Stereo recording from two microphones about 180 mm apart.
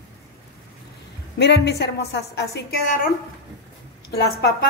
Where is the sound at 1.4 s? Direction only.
70° left (ahead or behind).